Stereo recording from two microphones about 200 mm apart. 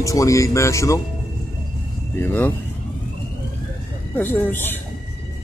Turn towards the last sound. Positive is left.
turn(degrees=10)  # may be behind; listen again after turning